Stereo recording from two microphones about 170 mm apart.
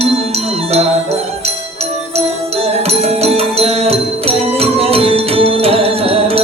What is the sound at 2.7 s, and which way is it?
Music, 35° right (ahead or behind).